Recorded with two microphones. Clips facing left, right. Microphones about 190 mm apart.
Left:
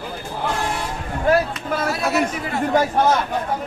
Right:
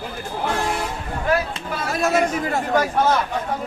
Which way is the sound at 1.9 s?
50° right (ahead or behind).